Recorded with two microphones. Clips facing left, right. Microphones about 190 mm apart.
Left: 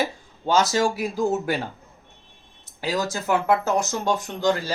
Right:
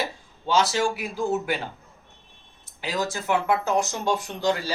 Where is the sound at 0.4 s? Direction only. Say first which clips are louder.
Left 2 dB; 45° left (ahead or behind).